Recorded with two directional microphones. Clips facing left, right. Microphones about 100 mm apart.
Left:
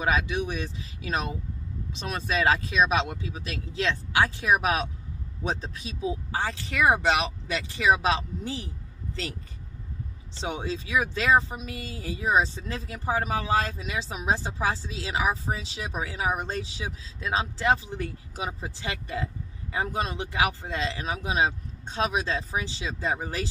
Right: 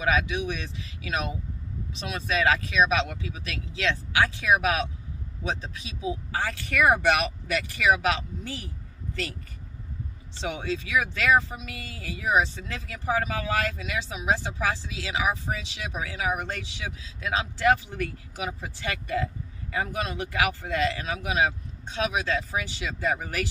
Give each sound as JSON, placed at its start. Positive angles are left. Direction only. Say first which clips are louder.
{"t": 0.0, "sound": "speech", "louder": "even", "side_deg": 35}
{"t": 2.0, "sound": "speech", "louder": "even", "side_deg": 35}
{"t": 6.3, "sound": "speech", "louder": "right 1 dB", "side_deg": 25}
{"t": 10.4, "sound": "speech", "louder": "right 1 dB", "side_deg": 30}